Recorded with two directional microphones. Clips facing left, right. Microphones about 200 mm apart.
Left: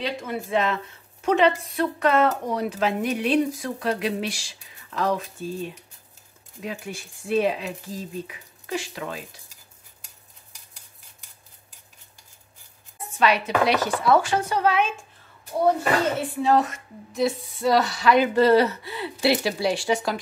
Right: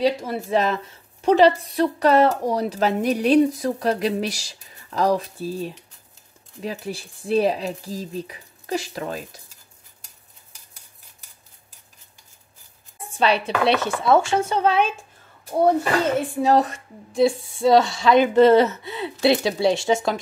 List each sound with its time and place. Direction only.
0.0 s a woman's voice: 40° right (ahead or behind)
13.1 s speech: 30° right (ahead or behind)
16.4 s speech: 35° right (ahead or behind)